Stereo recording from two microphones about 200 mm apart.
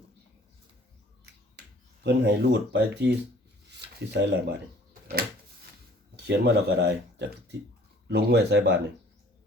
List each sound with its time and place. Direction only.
2.0 s speech: 55° right (ahead or behind)
6.1 s speech: 60° right (ahead or behind)